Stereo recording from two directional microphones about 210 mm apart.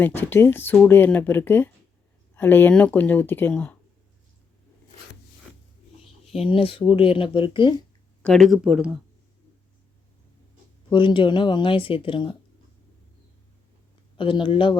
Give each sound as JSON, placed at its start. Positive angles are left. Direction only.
{"t": 0.0, "sound": "speech", "side_deg": 10}
{"t": 6.3, "sound": "speech", "side_deg": 25}
{"t": 8.2, "sound": "speech", "side_deg": 0}
{"t": 10.9, "sound": "speech", "side_deg": 25}
{"t": 14.2, "sound": "speech", "side_deg": 25}